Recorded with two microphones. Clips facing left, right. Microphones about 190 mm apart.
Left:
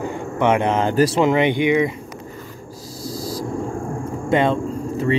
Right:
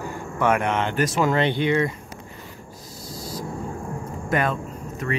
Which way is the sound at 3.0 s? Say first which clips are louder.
Left 7 dB; 35° left (ahead or behind).